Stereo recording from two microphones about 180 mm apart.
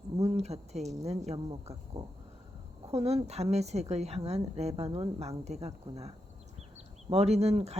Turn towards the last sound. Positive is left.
turn(degrees=-35)  # may be behind; listen again after turning